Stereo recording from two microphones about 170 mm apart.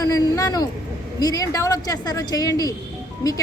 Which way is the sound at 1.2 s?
20° left (ahead or behind).